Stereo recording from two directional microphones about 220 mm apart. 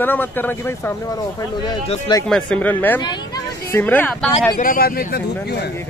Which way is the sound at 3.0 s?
20° left (ahead or behind).